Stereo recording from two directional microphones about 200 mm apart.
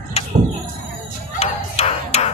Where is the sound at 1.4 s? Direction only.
30° left (ahead or behind).